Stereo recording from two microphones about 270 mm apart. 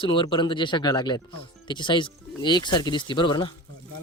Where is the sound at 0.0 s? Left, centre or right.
Centre.